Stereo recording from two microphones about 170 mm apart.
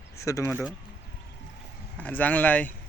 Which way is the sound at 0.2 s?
15° left (ahead or behind).